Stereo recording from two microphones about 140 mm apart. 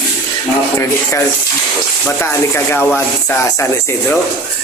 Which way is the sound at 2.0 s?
15° left (ahead or behind).